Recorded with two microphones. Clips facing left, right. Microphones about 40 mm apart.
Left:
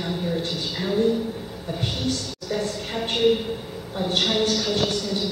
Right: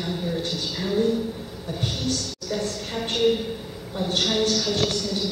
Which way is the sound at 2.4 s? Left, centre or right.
Centre.